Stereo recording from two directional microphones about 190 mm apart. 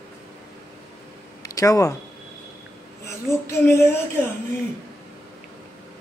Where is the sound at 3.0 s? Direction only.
15° left (ahead or behind).